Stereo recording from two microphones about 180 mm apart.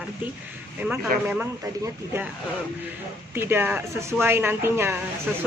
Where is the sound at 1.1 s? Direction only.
50° right (ahead or behind).